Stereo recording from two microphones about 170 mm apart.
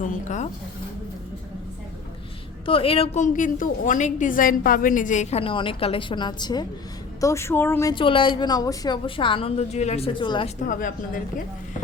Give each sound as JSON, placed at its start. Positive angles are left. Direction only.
{"t": 0.0, "sound": "speech", "side_deg": 45}
{"t": 2.6, "sound": "a woman's voice", "side_deg": 35}
{"t": 7.9, "sound": "a woman's voice", "side_deg": 30}
{"t": 10.6, "sound": "speech", "side_deg": 50}